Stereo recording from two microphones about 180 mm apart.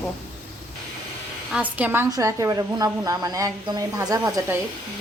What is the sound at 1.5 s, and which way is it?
A woman's voice, 10° right (ahead or behind).